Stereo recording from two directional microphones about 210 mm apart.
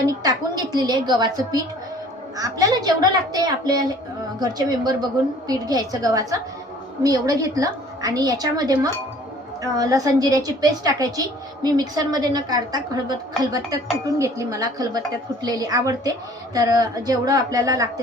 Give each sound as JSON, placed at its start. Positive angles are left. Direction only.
{"t": 0.1, "sound": "a woman's voice", "side_deg": -20}